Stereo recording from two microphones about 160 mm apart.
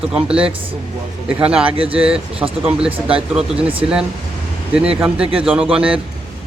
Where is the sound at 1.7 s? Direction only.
35° right (ahead or behind).